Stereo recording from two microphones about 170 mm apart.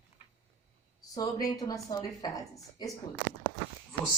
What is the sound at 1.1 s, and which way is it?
A woman's voice, 20° left (ahead or behind).